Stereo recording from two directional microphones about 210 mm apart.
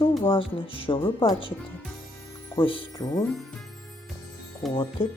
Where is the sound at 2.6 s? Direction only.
25° left (ahead or behind).